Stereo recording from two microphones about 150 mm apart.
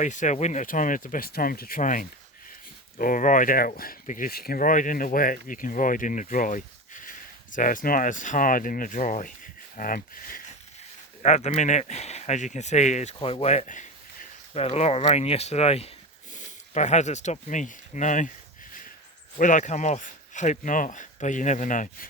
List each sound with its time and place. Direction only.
0.0 s speech: 55° left (ahead or behind)
11.2 s speech: 45° left (ahead or behind)
13.1 s speech: 40° left (ahead or behind)
16.3 s speech: 55° left (ahead or behind)
19.4 s speech: 60° left (ahead or behind)